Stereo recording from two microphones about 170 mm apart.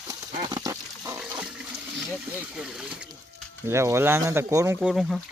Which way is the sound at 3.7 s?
15° right (ahead or behind).